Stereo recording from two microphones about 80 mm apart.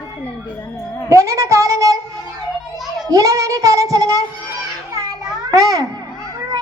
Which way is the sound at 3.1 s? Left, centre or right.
Right.